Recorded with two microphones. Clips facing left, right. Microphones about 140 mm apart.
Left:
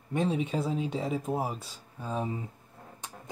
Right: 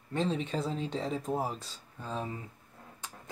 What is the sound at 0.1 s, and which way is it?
Speech, 15° left (ahead or behind).